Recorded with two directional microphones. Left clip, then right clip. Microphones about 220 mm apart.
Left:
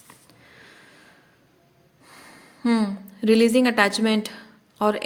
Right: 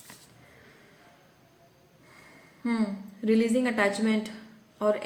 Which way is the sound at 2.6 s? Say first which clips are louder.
Left 7 dB; 50° left (ahead or behind).